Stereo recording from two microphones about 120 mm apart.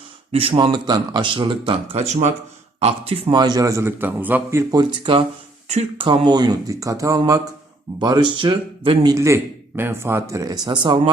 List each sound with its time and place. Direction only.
0.3 s speech: 50° right (ahead or behind)
2.0 s speech: 70° right (ahead or behind)
2.8 s speech: 55° right (ahead or behind)
3.3 s speech: 35° right (ahead or behind); by 4.6 s 15° right (ahead or behind)
4.7 s speech: 35° right (ahead or behind)
7.9 s speech: 40° right (ahead or behind)
9.1 s speech: 25° right (ahead or behind); by 11.1 s 45° right (ahead or behind)